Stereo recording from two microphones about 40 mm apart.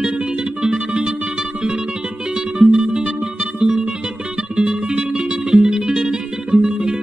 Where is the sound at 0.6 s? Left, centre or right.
Right.